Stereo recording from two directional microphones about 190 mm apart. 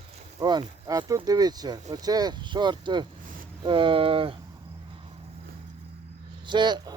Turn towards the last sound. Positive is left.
turn(degrees=-25)  # may be behind; listen again after turning